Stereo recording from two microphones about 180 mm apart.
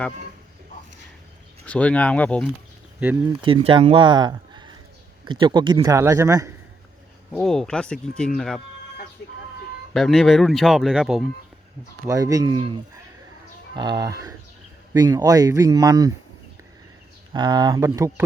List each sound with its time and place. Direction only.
1.6 s speech: 5° left (ahead or behind)
3.4 s speech: 30° right (ahead or behind)
7.3 s speech: 5° left (ahead or behind)
9.9 s speech: centre (ahead or behind)
12.0 s speech: 20° right (ahead or behind)
13.7 s speech: 25° right (ahead or behind)
17.3 s speech: 25° right (ahead or behind)